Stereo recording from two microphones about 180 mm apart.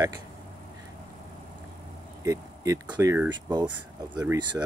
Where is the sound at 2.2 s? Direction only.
20° right (ahead or behind).